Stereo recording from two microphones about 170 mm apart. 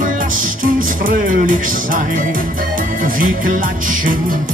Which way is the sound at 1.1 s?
55° right (ahead or behind).